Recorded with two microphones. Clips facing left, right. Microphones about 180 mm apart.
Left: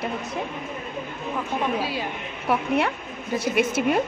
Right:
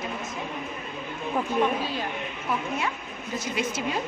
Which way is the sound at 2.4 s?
65° left (ahead or behind).